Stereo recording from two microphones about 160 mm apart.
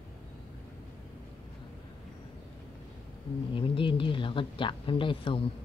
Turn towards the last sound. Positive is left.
turn(degrees=30)  # may be behind; listen again after turning